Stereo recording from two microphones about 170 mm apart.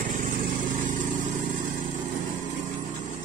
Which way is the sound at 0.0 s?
50° right (ahead or behind).